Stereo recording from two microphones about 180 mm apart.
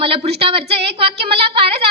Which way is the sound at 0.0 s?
30° right (ahead or behind).